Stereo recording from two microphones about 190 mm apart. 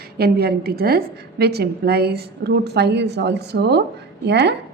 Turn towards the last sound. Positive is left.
turn(degrees=-60)  # may be behind; listen again after turning